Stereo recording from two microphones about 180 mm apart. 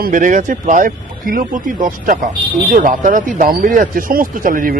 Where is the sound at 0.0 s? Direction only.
45° right (ahead or behind).